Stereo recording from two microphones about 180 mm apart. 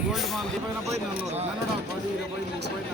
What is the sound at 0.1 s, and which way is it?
Speech, centre (ahead or behind).